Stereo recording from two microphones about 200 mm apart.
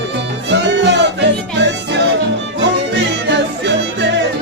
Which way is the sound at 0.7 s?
60° right (ahead or behind).